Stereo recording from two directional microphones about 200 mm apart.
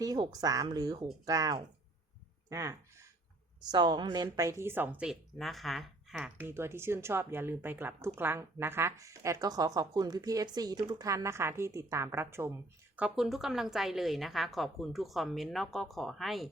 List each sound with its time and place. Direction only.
0.0 s a woman's voice: 20° right (ahead or behind)
2.5 s a sound: 15° right (ahead or behind)
3.7 s a woman's voice: 20° right (ahead or behind); by 16.5 s centre (ahead or behind)